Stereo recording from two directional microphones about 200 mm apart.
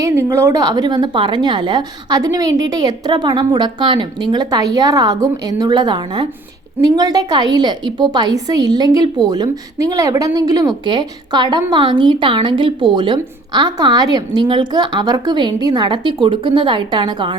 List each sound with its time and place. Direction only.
0.0 s a woman's voice: 15° right (ahead or behind)